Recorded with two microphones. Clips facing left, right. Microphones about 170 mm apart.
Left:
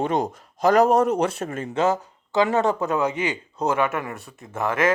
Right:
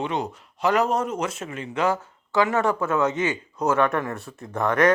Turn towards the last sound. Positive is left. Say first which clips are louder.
# right 2 dB
turn(degrees=5)  # may be behind; listen again after turning